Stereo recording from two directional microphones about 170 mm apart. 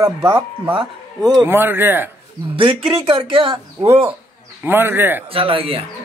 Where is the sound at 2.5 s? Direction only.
30° right (ahead or behind).